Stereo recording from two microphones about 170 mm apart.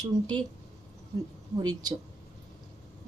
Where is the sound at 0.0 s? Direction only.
25° right (ahead or behind).